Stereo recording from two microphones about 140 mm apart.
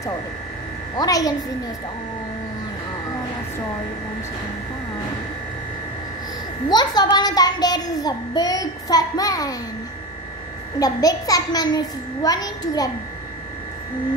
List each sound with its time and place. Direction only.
0.9 s a child's voice: 25° left (ahead or behind)
6.7 s a child's voice: 30° left (ahead or behind)
10.8 s a child's voice: 25° left (ahead or behind)